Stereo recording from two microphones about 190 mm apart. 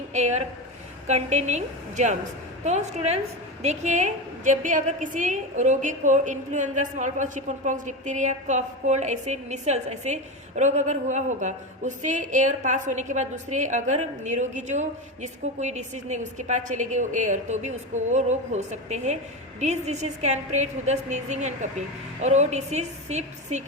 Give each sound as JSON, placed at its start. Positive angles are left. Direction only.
{"t": 0.1, "sound": "a woman's voice", "side_deg": -35}